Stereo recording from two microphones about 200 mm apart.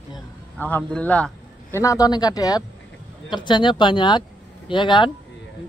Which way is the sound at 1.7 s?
15° left (ahead or behind).